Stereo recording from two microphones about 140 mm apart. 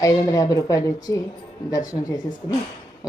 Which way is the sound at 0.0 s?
25° left (ahead or behind).